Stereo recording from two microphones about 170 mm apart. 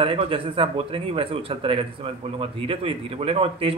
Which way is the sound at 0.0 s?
30° right (ahead or behind).